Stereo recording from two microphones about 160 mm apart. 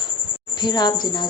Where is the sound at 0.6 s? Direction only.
25° left (ahead or behind).